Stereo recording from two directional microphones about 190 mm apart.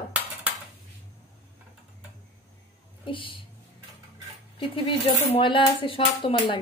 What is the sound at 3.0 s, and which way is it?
Speech, 25° left (ahead or behind).